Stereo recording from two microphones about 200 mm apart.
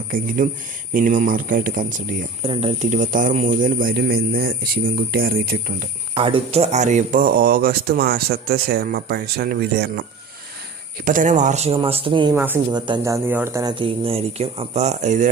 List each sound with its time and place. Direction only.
0.4 s speech: 40° right (ahead or behind)
2.4 s speech: 30° right (ahead or behind); by 5.7 s 50° right (ahead or behind)
6.1 s speech: 25° right (ahead or behind); by 10.0 s 50° right (ahead or behind)
11.0 s speech: 40° right (ahead or behind); by 12.3 s 25° right (ahead or behind)
12.3 s speech: 15° right (ahead or behind); by 15.3 s 35° right (ahead or behind)